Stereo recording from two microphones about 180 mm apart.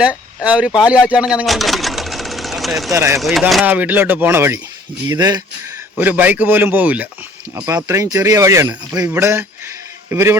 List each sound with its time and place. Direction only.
0.4 s speech: 5° right (ahead or behind)
2.9 s speech: 15° right (ahead or behind)
3.2 s speech: centre (ahead or behind); by 5.4 s 20° right (ahead or behind)
6.0 s a man's voice: 10° right (ahead or behind)